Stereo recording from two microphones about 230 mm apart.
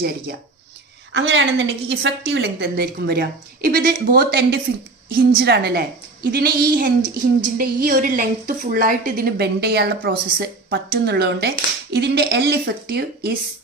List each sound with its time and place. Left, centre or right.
1.1 s a woman's voice: right